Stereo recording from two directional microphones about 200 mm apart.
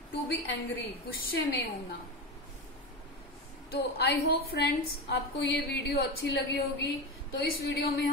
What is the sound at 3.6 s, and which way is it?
A woman's voice, 50° left (ahead or behind).